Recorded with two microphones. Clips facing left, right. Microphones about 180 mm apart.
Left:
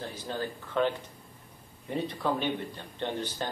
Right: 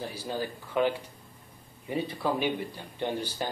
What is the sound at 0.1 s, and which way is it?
A man's voice, 10° right (ahead or behind).